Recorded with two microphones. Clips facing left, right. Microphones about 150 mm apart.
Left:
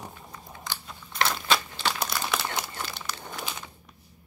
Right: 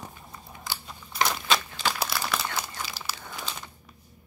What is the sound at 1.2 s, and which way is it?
Crumpling, 5° right (ahead or behind).